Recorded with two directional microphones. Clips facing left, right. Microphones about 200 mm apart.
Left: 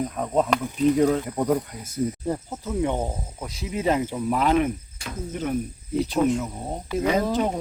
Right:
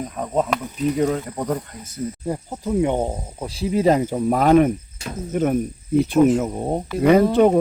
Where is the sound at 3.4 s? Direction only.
35° right (ahead or behind).